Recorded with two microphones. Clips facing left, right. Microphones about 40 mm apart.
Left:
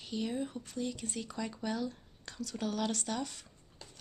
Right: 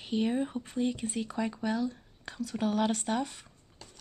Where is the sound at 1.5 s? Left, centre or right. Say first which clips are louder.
Right 5 dB; centre.